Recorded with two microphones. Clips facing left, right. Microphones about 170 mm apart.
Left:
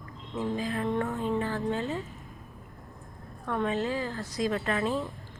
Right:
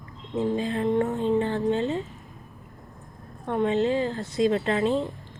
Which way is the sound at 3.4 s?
25° right (ahead or behind).